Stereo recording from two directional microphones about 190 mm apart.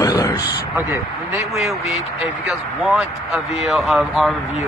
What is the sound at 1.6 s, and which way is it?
Speech, centre (ahead or behind).